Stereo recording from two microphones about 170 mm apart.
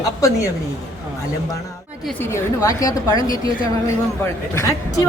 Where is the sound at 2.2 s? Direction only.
15° left (ahead or behind).